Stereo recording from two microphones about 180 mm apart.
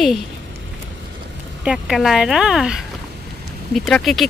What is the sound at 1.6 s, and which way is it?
A woman's voice, 5° right (ahead or behind).